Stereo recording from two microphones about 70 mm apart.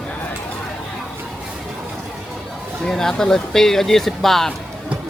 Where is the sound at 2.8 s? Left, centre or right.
Centre.